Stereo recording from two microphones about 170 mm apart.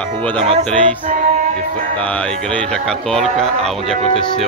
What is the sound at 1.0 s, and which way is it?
Music, 45° right (ahead or behind).